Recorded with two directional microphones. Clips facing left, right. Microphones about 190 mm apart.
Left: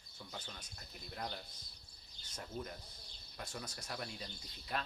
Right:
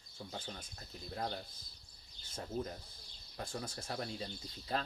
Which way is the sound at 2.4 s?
30° right (ahead or behind).